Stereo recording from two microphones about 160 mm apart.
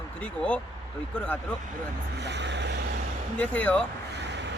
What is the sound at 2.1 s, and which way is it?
Speech, 90° right.